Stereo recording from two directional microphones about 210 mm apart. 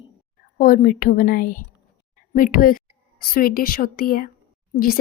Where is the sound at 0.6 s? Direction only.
40° left (ahead or behind).